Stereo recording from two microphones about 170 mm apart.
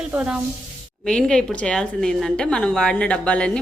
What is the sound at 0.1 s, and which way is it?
Speech, 5° right (ahead or behind).